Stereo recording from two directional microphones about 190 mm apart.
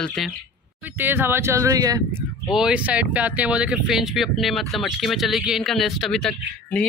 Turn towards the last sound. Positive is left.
turn(degrees=5)  # may be behind; listen again after turning